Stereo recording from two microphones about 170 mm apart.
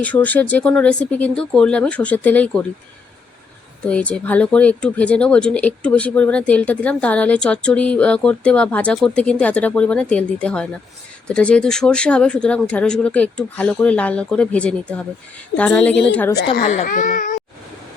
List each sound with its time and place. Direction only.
0.0 s speech: 10° left (ahead or behind)
3.8 s speech: 5° left (ahead or behind)
16.8 s speech: 50° left (ahead or behind)